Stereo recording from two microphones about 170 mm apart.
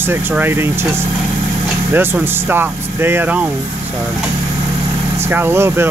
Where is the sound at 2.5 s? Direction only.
15° right (ahead or behind).